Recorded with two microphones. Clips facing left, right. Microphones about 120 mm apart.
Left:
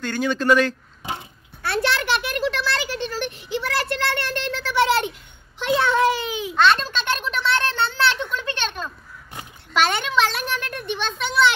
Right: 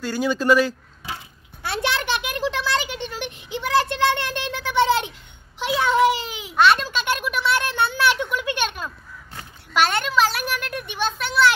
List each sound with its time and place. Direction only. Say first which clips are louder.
0.0 s speech: even; 5° right (ahead or behind)
1.6 s a sound: left 2 dB; 20° right (ahead or behind)
9.8 s a child's voice: right 1 dB; 5° right (ahead or behind)